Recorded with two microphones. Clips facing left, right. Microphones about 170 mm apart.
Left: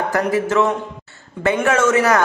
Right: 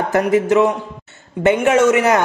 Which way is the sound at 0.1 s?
20° right (ahead or behind).